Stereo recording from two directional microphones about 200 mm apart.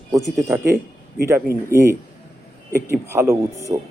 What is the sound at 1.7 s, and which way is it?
Speech, 15° right (ahead or behind).